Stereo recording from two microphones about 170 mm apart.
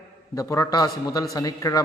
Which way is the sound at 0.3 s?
20° left (ahead or behind).